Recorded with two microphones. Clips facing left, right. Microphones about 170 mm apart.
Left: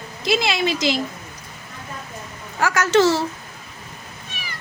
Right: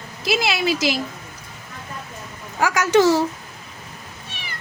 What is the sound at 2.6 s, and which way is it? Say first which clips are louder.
Speech: right 1 dB; 15° right (ahead or behind).